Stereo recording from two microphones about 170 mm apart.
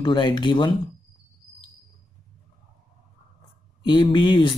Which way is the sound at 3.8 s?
25° left (ahead or behind).